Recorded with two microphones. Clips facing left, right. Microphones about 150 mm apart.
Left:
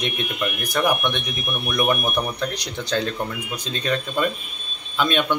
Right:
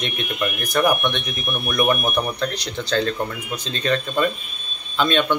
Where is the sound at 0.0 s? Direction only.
10° left (ahead or behind).